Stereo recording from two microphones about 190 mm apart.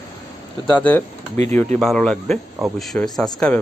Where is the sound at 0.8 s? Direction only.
10° left (ahead or behind).